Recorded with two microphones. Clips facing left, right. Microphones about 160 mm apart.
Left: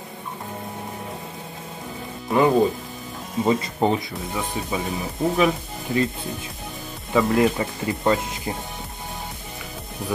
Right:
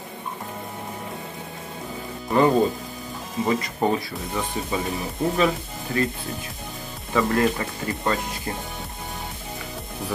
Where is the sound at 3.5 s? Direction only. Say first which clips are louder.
Left 2 dB; 20° left (ahead or behind).